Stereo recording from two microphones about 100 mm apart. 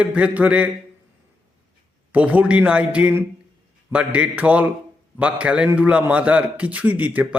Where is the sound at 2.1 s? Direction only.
15° right (ahead or behind).